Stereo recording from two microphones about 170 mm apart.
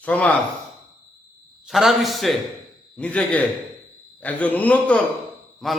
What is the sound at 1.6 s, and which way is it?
A man's voice, centre (ahead or behind).